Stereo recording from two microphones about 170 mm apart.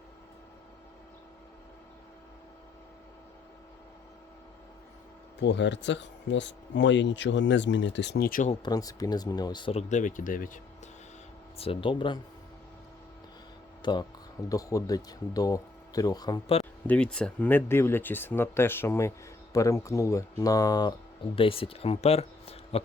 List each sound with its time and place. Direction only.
5.4 s speech: 90° left; by 8.4 s 60° left (ahead or behind)
8.6 s speech: 20° left (ahead or behind)
9.9 s speech: 50° left (ahead or behind)
11.5 s speech: 35° left (ahead or behind)
13.8 s speech: 25° left (ahead or behind)
16.8 s speech: 5° left (ahead or behind); by 22.8 s 35° left (ahead or behind)